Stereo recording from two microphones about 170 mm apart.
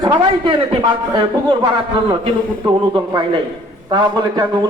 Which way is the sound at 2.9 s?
30° right (ahead or behind).